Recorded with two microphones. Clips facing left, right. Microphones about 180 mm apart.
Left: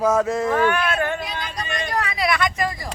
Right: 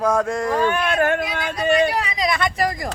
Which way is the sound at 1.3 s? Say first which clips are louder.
Right 5 dB; 50° right (ahead or behind).